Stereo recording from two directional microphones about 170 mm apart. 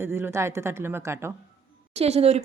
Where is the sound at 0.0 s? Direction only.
15° right (ahead or behind).